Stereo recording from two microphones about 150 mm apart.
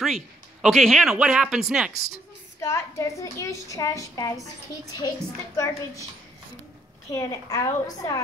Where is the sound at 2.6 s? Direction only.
20° left (ahead or behind).